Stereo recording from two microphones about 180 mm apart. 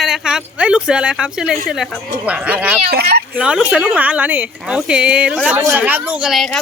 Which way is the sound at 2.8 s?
65° right (ahead or behind).